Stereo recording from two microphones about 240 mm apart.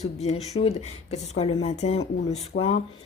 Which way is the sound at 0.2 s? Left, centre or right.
Left.